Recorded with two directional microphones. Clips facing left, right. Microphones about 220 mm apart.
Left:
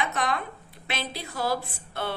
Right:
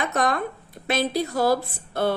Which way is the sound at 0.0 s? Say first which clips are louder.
Right 5 dB; 45° right (ahead or behind).